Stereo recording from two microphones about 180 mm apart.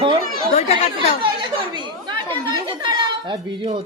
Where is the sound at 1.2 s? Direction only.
25° right (ahead or behind).